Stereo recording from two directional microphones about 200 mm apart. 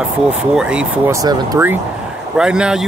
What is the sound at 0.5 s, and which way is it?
Speech, 5° right (ahead or behind).